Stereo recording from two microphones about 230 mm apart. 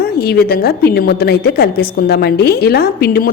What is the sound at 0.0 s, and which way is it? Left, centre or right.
A woman's voice, left.